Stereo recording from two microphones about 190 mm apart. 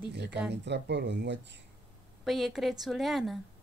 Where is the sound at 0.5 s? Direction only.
65° right (ahead or behind).